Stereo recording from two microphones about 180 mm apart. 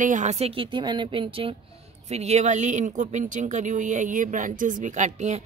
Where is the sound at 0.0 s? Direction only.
45° right (ahead or behind).